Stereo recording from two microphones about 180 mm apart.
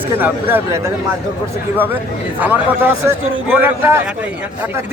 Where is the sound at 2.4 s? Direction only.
10° right (ahead or behind).